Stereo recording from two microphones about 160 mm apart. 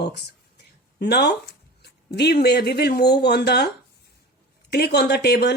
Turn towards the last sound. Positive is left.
turn(degrees=90)